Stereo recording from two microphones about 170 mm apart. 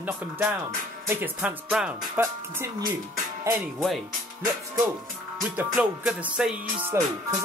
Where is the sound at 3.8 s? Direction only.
Centre (ahead or behind).